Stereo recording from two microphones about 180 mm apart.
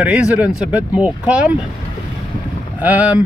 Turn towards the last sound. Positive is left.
turn(degrees=-10)  # may be behind; listen again after turning